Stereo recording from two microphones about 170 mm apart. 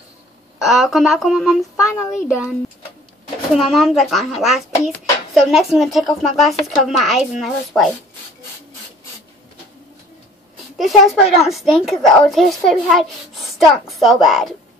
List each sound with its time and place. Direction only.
0.6 s speech: centre (ahead or behind)
1.8 s a child's voice: 15° left (ahead or behind)
2.2 s speech: 5° right (ahead or behind)
3.5 s speech: centre (ahead or behind)
10.8 s speech: centre (ahead or behind)